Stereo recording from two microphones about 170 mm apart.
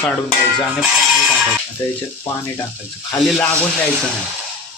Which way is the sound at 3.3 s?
5° left (ahead or behind).